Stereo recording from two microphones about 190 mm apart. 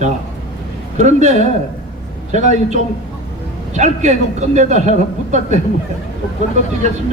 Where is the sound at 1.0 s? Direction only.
40° right (ahead or behind).